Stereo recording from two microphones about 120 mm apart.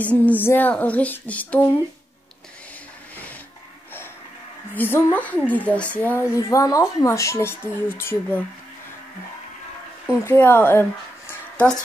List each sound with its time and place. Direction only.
0.0 s speech: 15° left (ahead or behind)
4.7 s speech: 15° left (ahead or behind)
6.3 s speech: 30° left (ahead or behind)
10.2 s speech: 20° left (ahead or behind)